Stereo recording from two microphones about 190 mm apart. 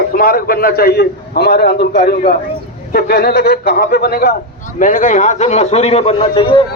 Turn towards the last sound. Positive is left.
turn(degrees=25)  # may be behind; listen again after turning